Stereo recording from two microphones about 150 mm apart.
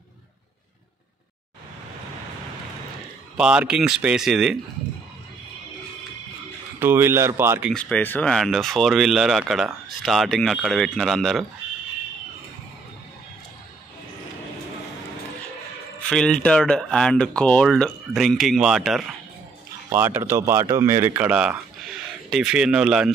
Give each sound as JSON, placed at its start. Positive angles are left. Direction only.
{"t": 3.3, "sound": "speech", "side_deg": -5}
{"t": 6.8, "sound": "speech", "side_deg": -15}
{"t": 7.7, "sound": "speech", "side_deg": 10}
{"t": 16.1, "sound": "speech", "side_deg": 5}
{"t": 19.9, "sound": "speech", "side_deg": -15}